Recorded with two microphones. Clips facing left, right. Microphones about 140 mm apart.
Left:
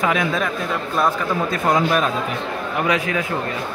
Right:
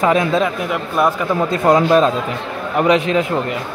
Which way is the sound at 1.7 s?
30° right (ahead or behind).